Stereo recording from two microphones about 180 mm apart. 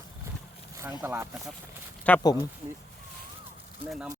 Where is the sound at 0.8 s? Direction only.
10° right (ahead or behind).